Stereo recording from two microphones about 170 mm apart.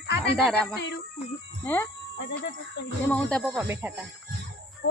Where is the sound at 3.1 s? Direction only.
5° left (ahead or behind).